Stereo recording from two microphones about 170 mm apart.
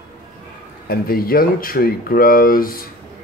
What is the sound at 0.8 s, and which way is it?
Speech, 60° left (ahead or behind).